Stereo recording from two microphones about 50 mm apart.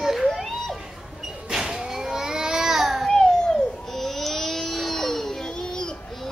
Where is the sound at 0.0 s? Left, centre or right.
Centre.